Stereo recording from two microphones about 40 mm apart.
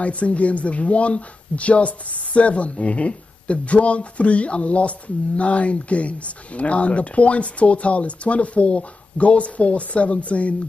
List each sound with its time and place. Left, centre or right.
0.0 s speech: left